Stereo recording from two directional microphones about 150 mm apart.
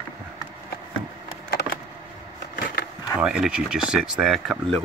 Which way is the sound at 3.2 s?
5° right (ahead or behind).